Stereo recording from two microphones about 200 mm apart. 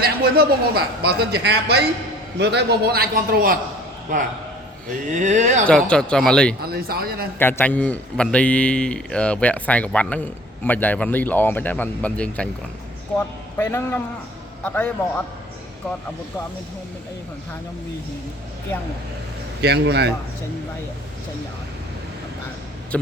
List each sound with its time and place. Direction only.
0.0 s speech: 50° right (ahead or behind)
4.9 s speech: 40° right (ahead or behind)
5.6 s speech: 5° left (ahead or behind)
6.6 s speech: 50° right (ahead or behind)
7.3 s a man's voice: 10° left (ahead or behind)
19.6 s a man's voice: 55° right (ahead or behind)